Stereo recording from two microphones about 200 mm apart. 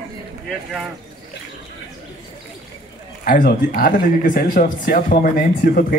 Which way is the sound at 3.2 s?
45° left (ahead or behind).